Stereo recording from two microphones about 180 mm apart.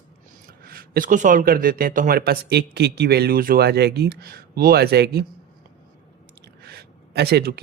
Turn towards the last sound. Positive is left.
turn(degrees=-60)  # may be behind; listen again after turning